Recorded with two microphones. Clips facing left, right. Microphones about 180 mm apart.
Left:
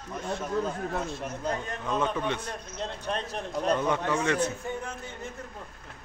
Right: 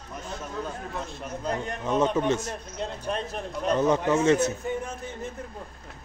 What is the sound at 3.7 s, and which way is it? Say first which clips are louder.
Speech: right 9 dB; 35° right (ahead or behind).